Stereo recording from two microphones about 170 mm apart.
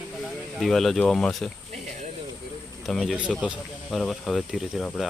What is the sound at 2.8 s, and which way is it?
Speech, centre (ahead or behind).